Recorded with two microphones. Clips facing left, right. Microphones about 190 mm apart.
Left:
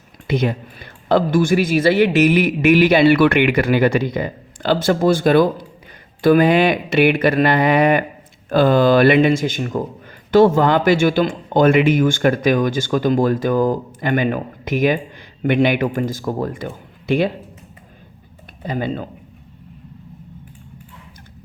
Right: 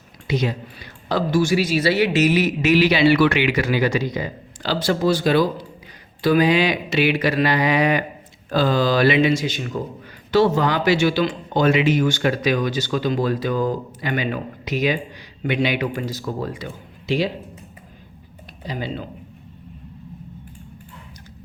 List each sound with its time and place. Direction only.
0.3 s a man's voice: 55° left (ahead or behind)
18.6 s a man's voice: 55° left (ahead or behind)